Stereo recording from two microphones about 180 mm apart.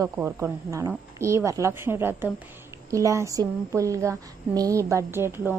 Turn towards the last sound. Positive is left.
turn(degrees=-10)  # may be behind; listen again after turning